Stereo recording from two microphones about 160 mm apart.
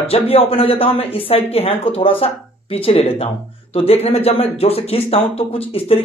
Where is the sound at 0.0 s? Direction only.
35° left (ahead or behind).